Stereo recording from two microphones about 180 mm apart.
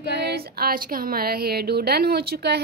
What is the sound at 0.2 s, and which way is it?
A woman's voice, 60° right (ahead or behind).